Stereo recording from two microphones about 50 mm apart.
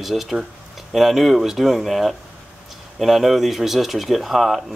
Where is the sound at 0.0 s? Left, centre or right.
Centre.